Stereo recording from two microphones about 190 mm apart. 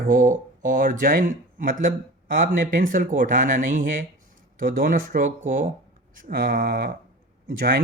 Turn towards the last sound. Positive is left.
turn(degrees=-50)  # may be behind; listen again after turning